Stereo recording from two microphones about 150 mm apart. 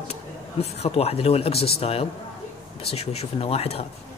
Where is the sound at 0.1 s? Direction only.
45° left (ahead or behind).